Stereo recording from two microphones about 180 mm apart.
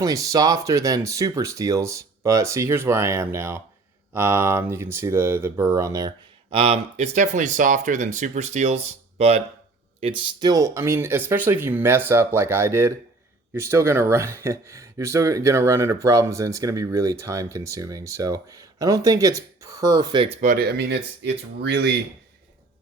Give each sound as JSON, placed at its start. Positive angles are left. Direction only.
{"t": 0.0, "sound": "speech", "side_deg": -20}
{"t": 6.5, "sound": "speech", "side_deg": -35}
{"t": 20.4, "sound": "speech", "side_deg": -55}